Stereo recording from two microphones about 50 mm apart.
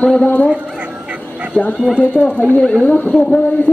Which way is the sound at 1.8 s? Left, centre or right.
Centre.